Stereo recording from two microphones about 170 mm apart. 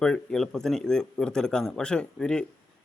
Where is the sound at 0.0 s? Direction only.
5° left (ahead or behind).